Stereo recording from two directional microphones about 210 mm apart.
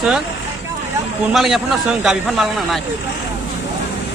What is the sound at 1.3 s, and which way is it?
A man's voice, centre (ahead or behind).